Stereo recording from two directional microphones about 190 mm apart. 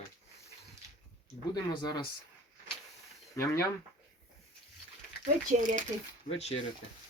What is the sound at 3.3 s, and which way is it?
Speech, 15° left (ahead or behind).